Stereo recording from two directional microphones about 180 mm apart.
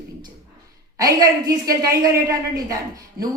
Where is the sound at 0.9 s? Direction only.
20° right (ahead or behind).